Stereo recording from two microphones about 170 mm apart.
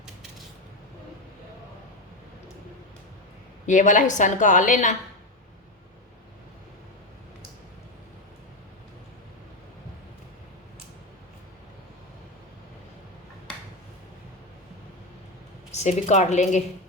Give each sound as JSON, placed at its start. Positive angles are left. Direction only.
{"t": 3.7, "sound": "a woman's voice", "side_deg": 45}
{"t": 15.7, "sound": "a woman's voice", "side_deg": 40}